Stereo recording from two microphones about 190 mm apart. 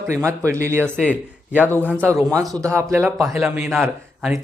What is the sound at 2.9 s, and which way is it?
A man's voice, 15° right (ahead or behind).